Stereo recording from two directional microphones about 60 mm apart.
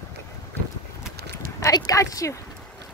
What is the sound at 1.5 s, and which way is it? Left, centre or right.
Speech, left.